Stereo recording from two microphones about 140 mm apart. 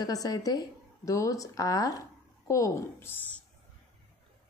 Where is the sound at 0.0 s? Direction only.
25° left (ahead or behind).